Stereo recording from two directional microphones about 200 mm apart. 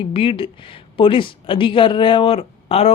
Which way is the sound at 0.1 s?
25° left (ahead or behind).